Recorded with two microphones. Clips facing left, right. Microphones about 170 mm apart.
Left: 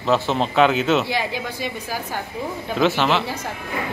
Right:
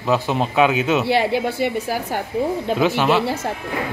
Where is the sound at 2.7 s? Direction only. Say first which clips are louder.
Even; 10° right (ahead or behind).